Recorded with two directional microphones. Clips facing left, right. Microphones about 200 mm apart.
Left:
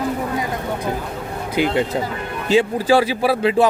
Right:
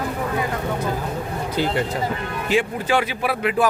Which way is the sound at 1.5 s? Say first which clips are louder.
Left 4 dB; 15° left (ahead or behind).